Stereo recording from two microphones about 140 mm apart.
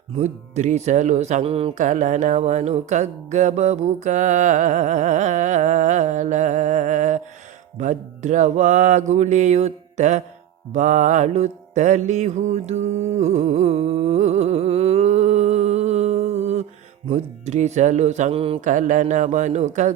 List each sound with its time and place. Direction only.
0.2 s music: 55° right (ahead or behind)
1.8 s music: 65° right (ahead or behind)
18.3 s mantra: 40° right (ahead or behind)
18.6 s music: 65° right (ahead or behind)